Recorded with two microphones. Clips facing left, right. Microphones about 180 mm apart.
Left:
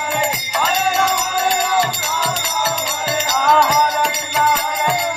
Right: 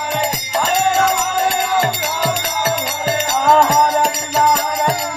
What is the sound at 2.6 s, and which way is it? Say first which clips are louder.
Music: right 3 dB; 50° right (ahead or behind).